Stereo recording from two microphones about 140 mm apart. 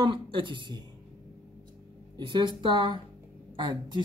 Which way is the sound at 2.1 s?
30° right (ahead or behind).